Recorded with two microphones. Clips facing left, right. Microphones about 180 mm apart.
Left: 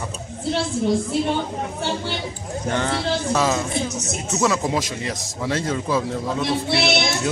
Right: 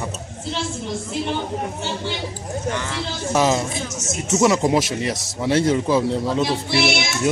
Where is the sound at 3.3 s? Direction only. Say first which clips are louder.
Right 5 dB; 20° right (ahead or behind).